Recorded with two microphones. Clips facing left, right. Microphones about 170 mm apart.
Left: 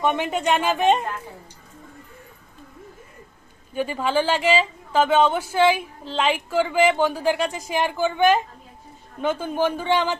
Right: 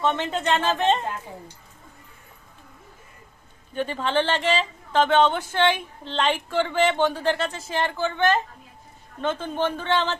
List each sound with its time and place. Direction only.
0.0 s speech: 15° left (ahead or behind)
3.8 s speech: 10° left (ahead or behind)